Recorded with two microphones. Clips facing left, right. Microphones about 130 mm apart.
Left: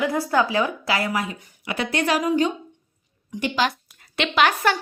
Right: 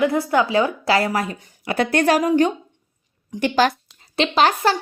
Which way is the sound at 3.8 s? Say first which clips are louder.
Right 5 dB; 25° right (ahead or behind).